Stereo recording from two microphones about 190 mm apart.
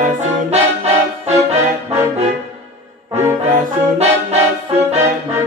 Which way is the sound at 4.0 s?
35° right (ahead or behind).